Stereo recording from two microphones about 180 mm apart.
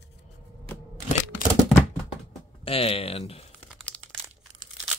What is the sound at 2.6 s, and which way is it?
Speech, 30° left (ahead or behind).